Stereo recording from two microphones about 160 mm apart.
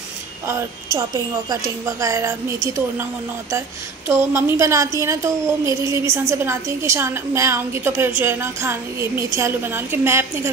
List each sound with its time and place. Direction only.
0.9 s a woman's voice: 20° right (ahead or behind)
4.1 s a woman's voice: 15° right (ahead or behind)